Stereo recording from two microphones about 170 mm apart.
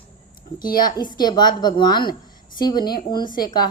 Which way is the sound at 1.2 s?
25° left (ahead or behind).